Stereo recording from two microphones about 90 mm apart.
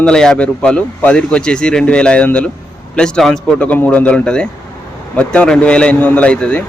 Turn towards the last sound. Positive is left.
turn(degrees=15)  # may be behind; listen again after turning